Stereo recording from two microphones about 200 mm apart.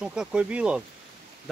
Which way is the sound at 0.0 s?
5° right (ahead or behind).